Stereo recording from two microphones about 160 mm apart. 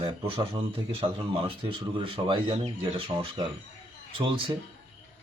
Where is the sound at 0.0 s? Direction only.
35° right (ahead or behind).